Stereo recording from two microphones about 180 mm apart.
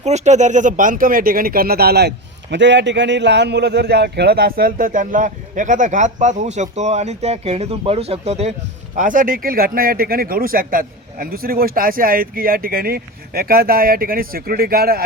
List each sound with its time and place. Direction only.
0.0 s speech: 40° right (ahead or behind)
9.0 s speech: 45° right (ahead or behind)